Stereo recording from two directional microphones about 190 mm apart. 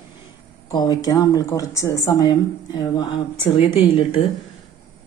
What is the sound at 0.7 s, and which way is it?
A woman's voice, 20° left (ahead or behind).